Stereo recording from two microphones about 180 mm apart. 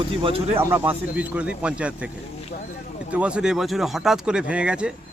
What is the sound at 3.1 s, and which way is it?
Speech, 5° right (ahead or behind).